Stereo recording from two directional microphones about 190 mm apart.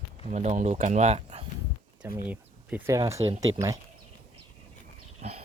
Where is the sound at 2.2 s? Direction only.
10° right (ahead or behind).